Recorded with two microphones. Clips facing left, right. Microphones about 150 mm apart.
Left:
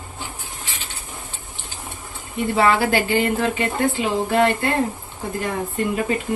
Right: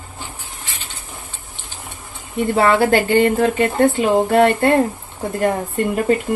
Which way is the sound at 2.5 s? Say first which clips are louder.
Right 4 dB; 50° right (ahead or behind).